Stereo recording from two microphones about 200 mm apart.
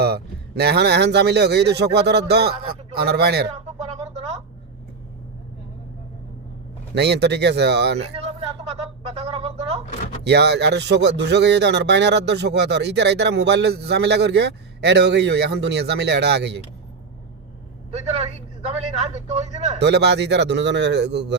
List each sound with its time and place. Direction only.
0.0 s speech: 55° right (ahead or behind)
3.5 s a sound: 35° right (ahead or behind)
6.9 s speech: 55° right (ahead or behind)
7.9 s a sound: 30° right (ahead or behind)
10.2 s speech: 55° right (ahead or behind)
17.9 s speech: 30° right (ahead or behind)
19.8 s speech: 60° right (ahead or behind)